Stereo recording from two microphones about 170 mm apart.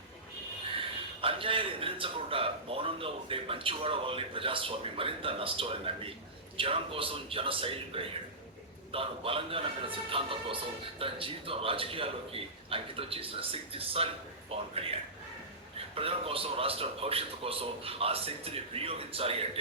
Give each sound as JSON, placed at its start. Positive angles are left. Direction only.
{"t": 1.2, "sound": "a sound", "side_deg": -30}
{"t": 6.6, "sound": "a man's voice", "side_deg": -30}
{"t": 16.0, "sound": "a man's voice", "side_deg": -35}